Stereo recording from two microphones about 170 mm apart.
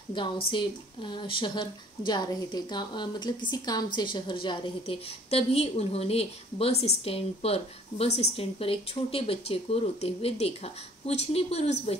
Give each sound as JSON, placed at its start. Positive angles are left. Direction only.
{"t": 0.2, "sound": "speech", "side_deg": 30}